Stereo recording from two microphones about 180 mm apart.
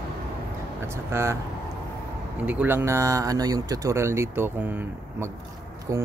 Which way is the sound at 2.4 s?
10° right (ahead or behind).